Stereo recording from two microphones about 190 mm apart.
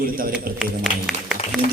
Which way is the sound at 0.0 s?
50° right (ahead or behind).